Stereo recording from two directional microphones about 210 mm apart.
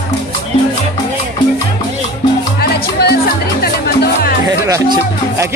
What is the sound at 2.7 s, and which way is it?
Speech, 50° left (ahead or behind).